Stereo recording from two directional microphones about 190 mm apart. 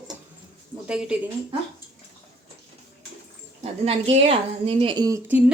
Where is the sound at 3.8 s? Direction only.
30° right (ahead or behind).